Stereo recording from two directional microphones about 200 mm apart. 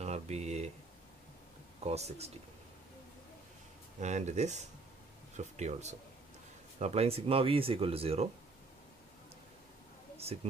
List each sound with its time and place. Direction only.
0.0 s a sound: 35° right (ahead or behind)
1.8 s speech: 30° right (ahead or behind)
4.0 s speech: 35° right (ahead or behind)
10.1 s speech: 30° right (ahead or behind)